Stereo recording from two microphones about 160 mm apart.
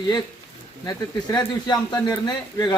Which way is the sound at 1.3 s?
25° left (ahead or behind).